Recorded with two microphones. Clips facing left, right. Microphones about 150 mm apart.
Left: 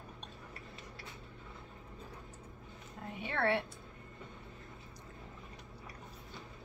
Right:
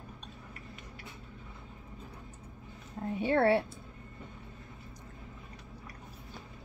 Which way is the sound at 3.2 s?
35° right (ahead or behind).